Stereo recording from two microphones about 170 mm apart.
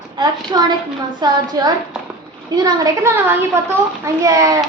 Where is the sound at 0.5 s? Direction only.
25° right (ahead or behind).